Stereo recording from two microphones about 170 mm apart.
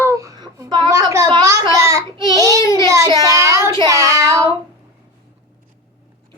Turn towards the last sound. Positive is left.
turn(degrees=-20)  # may be behind; listen again after turning